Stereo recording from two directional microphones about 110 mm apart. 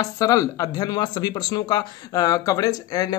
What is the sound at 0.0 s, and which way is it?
Speech, 30° left (ahead or behind).